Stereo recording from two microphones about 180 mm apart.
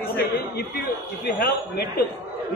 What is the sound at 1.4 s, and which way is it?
Speech, 60° left (ahead or behind).